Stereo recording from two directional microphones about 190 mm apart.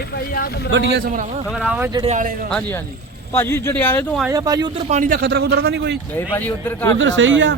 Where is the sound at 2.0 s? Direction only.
40° right (ahead or behind).